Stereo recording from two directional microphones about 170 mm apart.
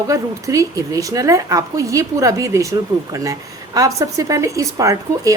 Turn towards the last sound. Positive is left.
turn(degrees=-20)  # may be behind; listen again after turning